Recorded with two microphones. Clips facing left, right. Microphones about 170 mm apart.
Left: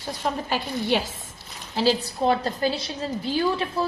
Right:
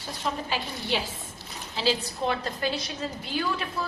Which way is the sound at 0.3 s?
50° left (ahead or behind).